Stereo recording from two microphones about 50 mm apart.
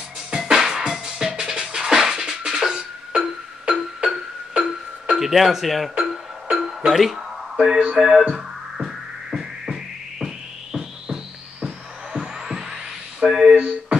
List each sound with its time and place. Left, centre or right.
0.3 s music: centre
13.6 s music: right